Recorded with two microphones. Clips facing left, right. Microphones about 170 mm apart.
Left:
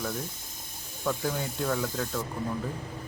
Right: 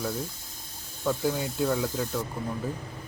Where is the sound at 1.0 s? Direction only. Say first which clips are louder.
Right 3 dB; 15° right (ahead or behind).